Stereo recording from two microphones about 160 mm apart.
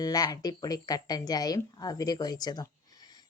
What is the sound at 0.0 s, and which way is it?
Speech, 25° left (ahead or behind).